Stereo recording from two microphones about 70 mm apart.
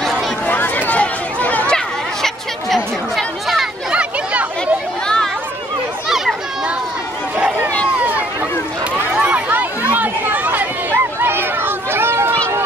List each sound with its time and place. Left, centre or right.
0.5 s a sound: left
2.2 s chatter: centre
3.9 s a sound: centre
5.0 s chatter: centre
6.0 s children playing: centre
9.1 s run: centre; by 12.4 s right